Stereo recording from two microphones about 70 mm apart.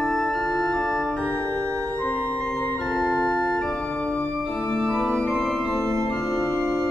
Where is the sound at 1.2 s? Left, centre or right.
Centre.